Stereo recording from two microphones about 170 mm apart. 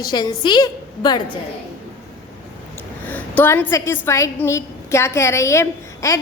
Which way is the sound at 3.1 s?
10° left (ahead or behind).